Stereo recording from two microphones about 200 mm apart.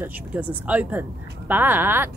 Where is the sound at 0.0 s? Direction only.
10° right (ahead or behind).